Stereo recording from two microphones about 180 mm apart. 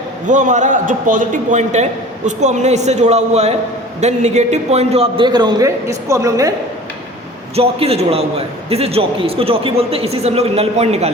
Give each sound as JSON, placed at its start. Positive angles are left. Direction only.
{"t": 0.3, "sound": "a man's voice", "side_deg": -45}
{"t": 7.5, "sound": "a man's voice", "side_deg": -35}